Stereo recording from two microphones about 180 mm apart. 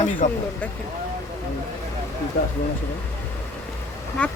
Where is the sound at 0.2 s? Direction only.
45° left (ahead or behind).